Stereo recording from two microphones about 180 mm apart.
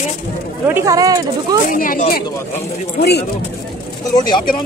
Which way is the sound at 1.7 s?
50° left (ahead or behind).